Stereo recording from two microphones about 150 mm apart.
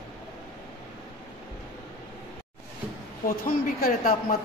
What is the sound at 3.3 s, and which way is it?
Speech, 70° left (ahead or behind).